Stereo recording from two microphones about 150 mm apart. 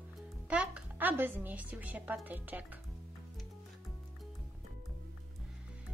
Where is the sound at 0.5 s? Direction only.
10° right (ahead or behind).